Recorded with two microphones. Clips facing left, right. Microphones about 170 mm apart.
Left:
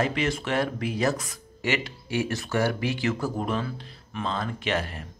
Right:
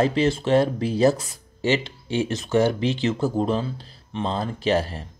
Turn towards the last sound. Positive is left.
turn(degrees=-30)  # may be behind; listen again after turning